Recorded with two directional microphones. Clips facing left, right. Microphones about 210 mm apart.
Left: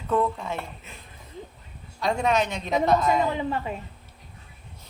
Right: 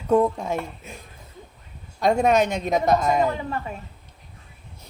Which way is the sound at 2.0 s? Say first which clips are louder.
Right 5 dB; 45° right (ahead or behind).